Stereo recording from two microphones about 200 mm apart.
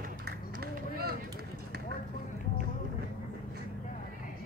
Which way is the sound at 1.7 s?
55° right (ahead or behind).